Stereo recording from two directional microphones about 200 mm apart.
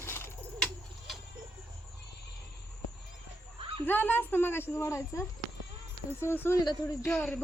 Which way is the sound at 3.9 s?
10° left (ahead or behind).